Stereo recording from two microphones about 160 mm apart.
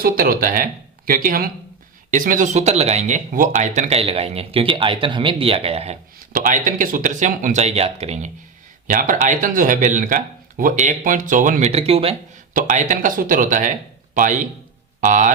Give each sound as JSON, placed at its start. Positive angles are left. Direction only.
{"t": 0.0, "sound": "speech", "side_deg": -65}
{"t": 6.3, "sound": "speech", "side_deg": -55}
{"t": 8.9, "sound": "speech", "side_deg": -55}
{"t": 12.5, "sound": "speech", "side_deg": -55}